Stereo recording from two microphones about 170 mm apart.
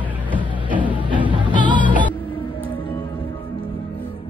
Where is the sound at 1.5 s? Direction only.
30° right (ahead or behind).